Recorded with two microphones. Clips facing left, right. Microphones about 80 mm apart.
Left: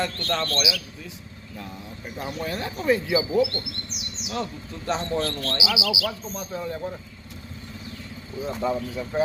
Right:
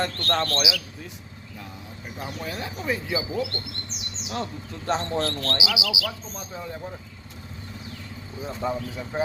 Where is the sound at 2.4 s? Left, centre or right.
Centre.